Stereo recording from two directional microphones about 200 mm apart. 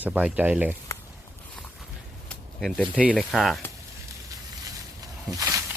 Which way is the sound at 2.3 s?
5° left (ahead or behind).